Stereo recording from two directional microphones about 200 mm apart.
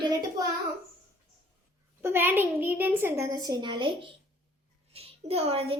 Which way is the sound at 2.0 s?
10° right (ahead or behind).